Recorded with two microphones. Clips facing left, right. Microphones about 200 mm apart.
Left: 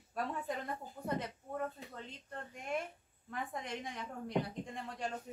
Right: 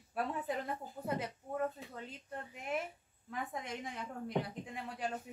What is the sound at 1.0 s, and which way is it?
A woman's voice, 5° right (ahead or behind).